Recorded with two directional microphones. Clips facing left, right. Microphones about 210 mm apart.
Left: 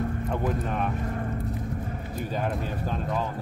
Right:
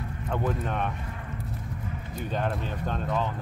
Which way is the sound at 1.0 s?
45° left (ahead or behind).